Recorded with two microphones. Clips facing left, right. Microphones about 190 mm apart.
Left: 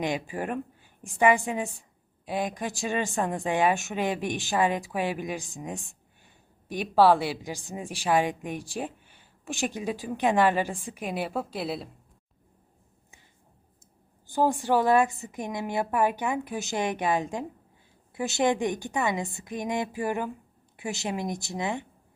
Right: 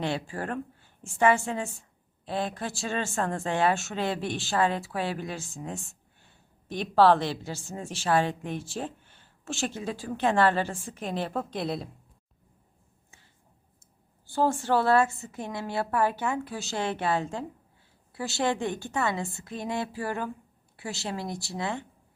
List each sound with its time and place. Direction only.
0.0 s a woman's voice: 15° left (ahead or behind)
14.3 s a woman's voice: 15° left (ahead or behind)